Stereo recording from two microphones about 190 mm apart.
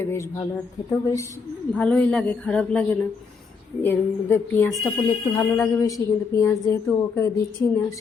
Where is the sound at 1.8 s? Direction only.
5° left (ahead or behind).